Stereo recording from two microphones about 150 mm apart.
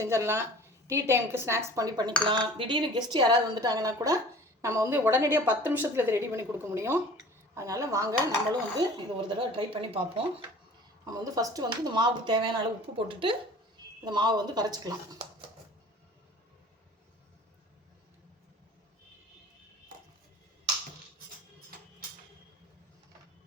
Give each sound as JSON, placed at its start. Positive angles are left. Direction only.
{"t": 0.0, "sound": "a woman's voice", "side_deg": -20}
{"t": 8.8, "sound": "speech", "side_deg": -30}
{"t": 11.0, "sound": "a woman's voice", "side_deg": -25}